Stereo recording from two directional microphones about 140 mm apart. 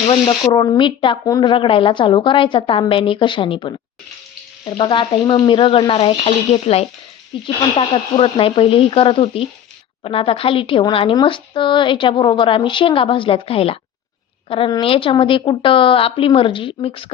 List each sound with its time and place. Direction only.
0.1 s speech: 35° left (ahead or behind)